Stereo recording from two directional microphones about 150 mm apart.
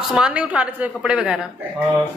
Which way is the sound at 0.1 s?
10° right (ahead or behind).